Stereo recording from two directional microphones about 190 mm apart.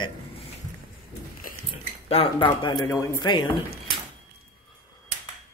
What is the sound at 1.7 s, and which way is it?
Speech, 30° left (ahead or behind).